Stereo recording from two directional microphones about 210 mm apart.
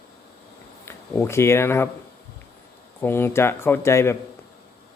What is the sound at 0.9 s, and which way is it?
Speech, 10° left (ahead or behind).